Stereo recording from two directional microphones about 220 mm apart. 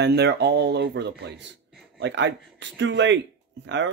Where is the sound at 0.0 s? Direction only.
50° right (ahead or behind).